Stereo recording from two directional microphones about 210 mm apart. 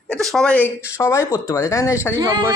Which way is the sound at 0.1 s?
Centre (ahead or behind).